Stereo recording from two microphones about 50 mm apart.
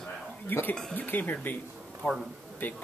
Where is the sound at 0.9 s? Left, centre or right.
Left.